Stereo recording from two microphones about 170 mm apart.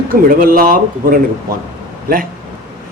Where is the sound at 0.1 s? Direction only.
55° right (ahead or behind).